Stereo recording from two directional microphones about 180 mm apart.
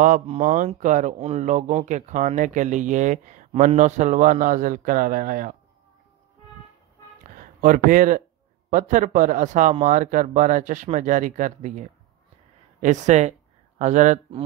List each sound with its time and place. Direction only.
0.0 s speech: 45° right (ahead or behind)
7.3 s speech: 50° right (ahead or behind)